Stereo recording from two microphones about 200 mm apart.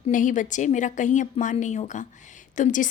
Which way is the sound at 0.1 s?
40° left (ahead or behind).